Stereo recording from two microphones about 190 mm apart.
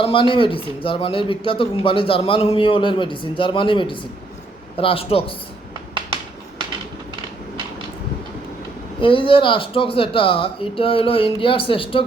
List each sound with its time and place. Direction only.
0.0 s a man's voice: 25° left (ahead or behind)
9.0 s a man's voice: 25° left (ahead or behind)